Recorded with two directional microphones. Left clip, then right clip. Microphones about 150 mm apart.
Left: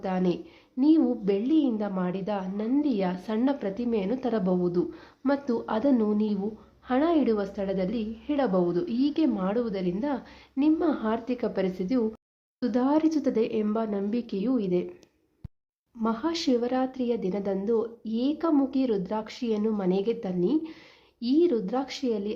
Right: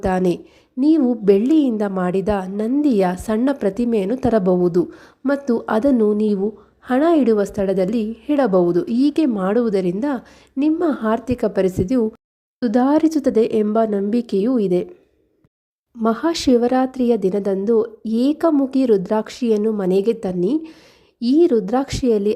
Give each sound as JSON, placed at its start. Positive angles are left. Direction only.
{"t": 0.0, "sound": "a woman's voice", "side_deg": -50}
{"t": 16.0, "sound": "a woman's voice", "side_deg": -50}